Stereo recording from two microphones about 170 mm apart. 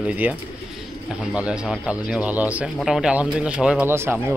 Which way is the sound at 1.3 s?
5° right (ahead or behind).